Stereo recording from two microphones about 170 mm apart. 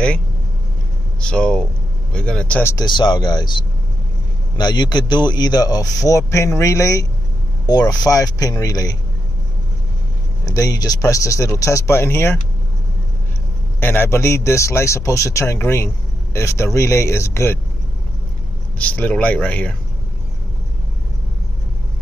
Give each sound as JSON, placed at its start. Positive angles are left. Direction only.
{"t": 1.2, "sound": "a man's voice", "side_deg": 5}
{"t": 2.7, "sound": "speech", "side_deg": 25}
{"t": 10.4, "sound": "speech", "side_deg": 20}
{"t": 13.7, "sound": "a man's voice", "side_deg": 10}
{"t": 18.8, "sound": "a man's voice", "side_deg": 10}